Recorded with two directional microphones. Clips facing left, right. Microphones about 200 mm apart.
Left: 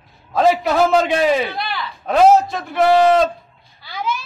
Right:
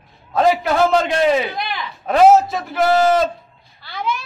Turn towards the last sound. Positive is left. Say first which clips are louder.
# even
turn(degrees=5)  # may be behind; listen again after turning